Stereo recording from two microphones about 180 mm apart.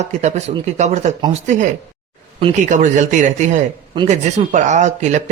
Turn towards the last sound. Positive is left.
turn(degrees=-40)  # may be behind; listen again after turning